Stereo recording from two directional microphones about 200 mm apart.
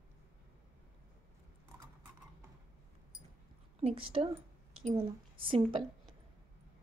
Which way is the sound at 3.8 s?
25° right (ahead or behind).